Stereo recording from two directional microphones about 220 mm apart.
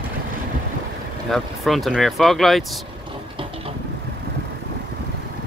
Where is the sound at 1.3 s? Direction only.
Centre (ahead or behind).